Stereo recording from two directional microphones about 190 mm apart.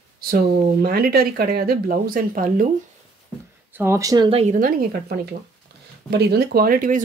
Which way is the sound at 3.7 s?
10° right (ahead or behind).